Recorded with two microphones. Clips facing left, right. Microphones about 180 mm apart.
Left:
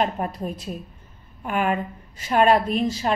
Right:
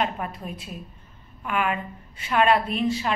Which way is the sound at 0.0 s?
40° left (ahead or behind).